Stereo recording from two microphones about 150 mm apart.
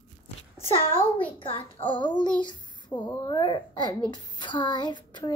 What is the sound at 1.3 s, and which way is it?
Child singing, 35° left (ahead or behind).